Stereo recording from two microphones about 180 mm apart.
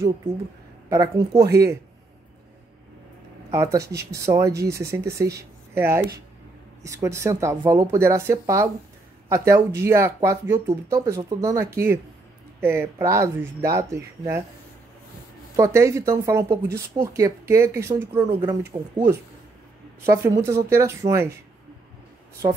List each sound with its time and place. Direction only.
0.8 s speech: 20° right (ahead or behind)
3.5 s speech: 15° right (ahead or behind)
15.5 s speech: 15° right (ahead or behind)